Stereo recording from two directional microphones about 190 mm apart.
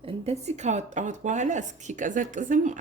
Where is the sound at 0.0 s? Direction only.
35° right (ahead or behind).